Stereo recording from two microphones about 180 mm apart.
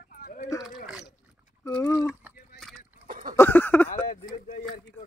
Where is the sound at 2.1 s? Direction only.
10° right (ahead or behind).